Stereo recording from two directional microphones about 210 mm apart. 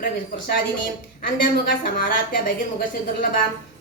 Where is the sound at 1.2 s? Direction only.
40° left (ahead or behind).